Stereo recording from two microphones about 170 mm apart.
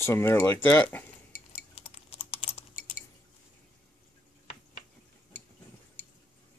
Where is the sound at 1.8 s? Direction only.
35° left (ahead or behind).